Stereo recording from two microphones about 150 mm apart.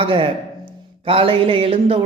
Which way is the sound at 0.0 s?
35° right (ahead or behind).